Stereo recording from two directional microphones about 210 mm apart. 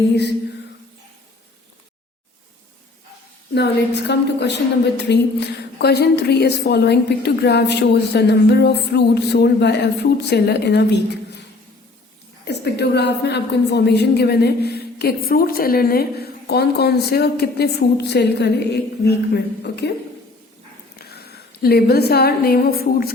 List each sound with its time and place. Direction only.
3.5 s a woman's voice: 55° left (ahead or behind)
12.5 s a woman's voice: 50° left (ahead or behind)
21.1 s a woman's voice: 50° left (ahead or behind)